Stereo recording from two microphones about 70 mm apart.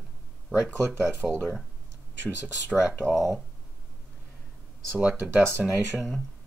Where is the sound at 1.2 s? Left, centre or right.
Centre.